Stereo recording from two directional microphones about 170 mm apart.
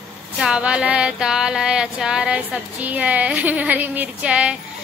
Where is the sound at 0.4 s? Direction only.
5° right (ahead or behind).